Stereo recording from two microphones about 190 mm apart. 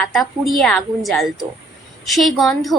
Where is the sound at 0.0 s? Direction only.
Centre (ahead or behind).